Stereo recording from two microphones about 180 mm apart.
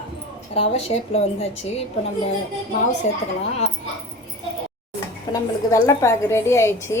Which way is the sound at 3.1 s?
40° left (ahead or behind).